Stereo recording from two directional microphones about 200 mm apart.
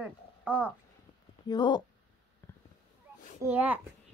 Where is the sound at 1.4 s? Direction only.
20° left (ahead or behind).